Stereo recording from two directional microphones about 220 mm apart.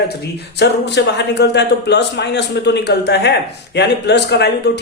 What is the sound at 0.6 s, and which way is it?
Speech, 50° left (ahead or behind).